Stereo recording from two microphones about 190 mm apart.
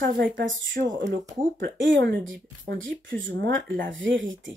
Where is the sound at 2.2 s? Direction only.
80° right.